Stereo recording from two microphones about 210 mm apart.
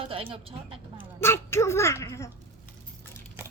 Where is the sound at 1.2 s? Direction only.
10° left (ahead or behind).